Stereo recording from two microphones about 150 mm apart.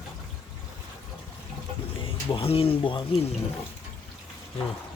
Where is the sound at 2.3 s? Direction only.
40° left (ahead or behind).